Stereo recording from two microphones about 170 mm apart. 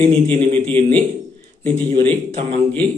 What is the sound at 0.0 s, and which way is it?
Speech, 30° right (ahead or behind).